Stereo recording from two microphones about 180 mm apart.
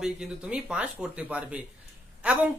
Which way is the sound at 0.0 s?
5° right (ahead or behind).